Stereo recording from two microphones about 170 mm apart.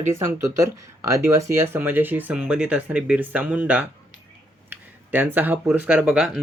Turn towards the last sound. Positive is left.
turn(degrees=-5)  # may be behind; listen again after turning